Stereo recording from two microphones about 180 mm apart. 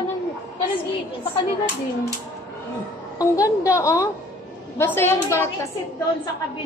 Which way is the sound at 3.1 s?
20° left (ahead or behind).